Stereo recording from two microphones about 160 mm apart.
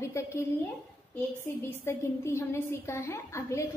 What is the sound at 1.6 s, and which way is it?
A woman's voice, 15° left (ahead or behind).